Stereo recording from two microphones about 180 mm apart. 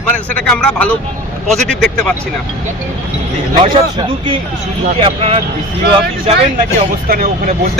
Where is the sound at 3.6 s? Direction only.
30° right (ahead or behind).